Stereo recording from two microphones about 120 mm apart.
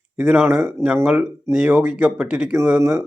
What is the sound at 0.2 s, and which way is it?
Speech, 15° right (ahead or behind).